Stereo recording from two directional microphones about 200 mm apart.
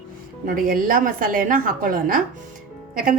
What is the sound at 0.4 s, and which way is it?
A woman's voice, 45° right (ahead or behind).